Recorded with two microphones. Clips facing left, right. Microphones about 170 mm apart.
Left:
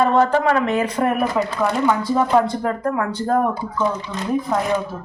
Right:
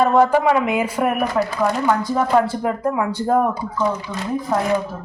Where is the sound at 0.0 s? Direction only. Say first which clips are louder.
Right 1 dB; 10° right (ahead or behind).